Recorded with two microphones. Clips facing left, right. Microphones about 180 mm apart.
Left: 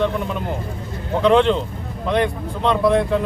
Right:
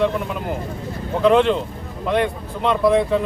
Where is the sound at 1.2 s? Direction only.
Centre (ahead or behind).